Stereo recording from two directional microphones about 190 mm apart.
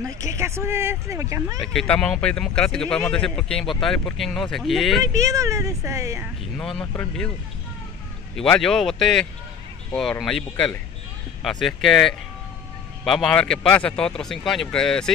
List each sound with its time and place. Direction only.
0.0 s speech: 15° right (ahead or behind)
1.6 s speech: 5° left (ahead or behind)
5.0 s speech: 20° right (ahead or behind)
6.6 s speech: 5° left (ahead or behind)
8.4 s speech: 5° left (ahead or behind)